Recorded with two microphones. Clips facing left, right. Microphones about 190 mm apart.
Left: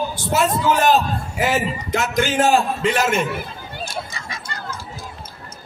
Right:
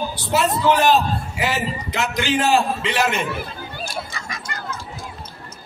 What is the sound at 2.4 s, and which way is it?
Speech, 45° left (ahead or behind).